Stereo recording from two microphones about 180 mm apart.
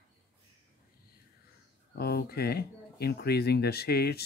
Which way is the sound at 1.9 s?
60° left (ahead or behind).